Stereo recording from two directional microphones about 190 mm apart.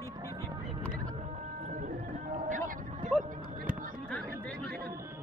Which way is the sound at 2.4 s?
40° right (ahead or behind).